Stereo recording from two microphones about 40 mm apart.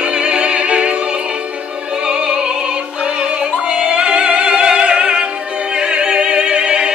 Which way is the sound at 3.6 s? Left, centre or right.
Right.